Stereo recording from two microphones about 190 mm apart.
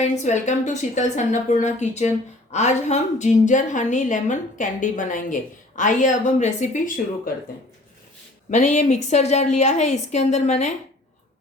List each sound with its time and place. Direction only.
0.0 s a woman's voice: 40° left (ahead or behind)
8.4 s a woman's voice: 40° left (ahead or behind)